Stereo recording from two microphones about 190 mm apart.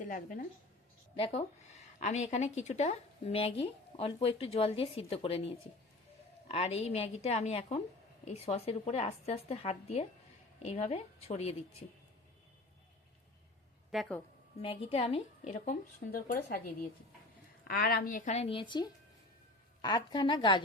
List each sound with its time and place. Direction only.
0.0 s speech: 45° left (ahead or behind)
1.1 s speech: 30° left (ahead or behind)
13.9 s speech: centre (ahead or behind)
14.6 s a woman's voice: 30° left (ahead or behind)